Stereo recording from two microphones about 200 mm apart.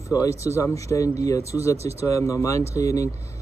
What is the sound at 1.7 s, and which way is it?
Speech, 30° right (ahead or behind).